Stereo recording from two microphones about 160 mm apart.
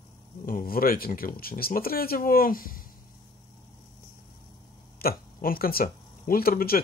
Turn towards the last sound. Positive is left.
turn(degrees=70)  # may be behind; listen again after turning